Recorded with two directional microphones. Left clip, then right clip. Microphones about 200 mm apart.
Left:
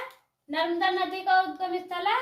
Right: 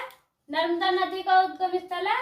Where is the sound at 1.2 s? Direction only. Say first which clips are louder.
Right 2 dB; centre (ahead or behind).